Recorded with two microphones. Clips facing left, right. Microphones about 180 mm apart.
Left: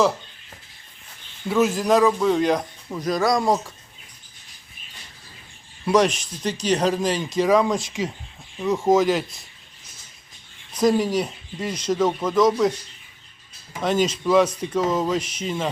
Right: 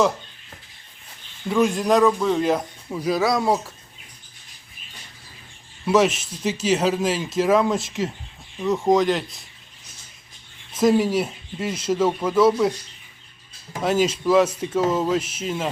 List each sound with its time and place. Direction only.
1.5 s speech: 5° left (ahead or behind)
5.8 s speech: 5° right (ahead or behind)
10.7 s speech: 5° right (ahead or behind)
13.8 s speech: 5° right (ahead or behind)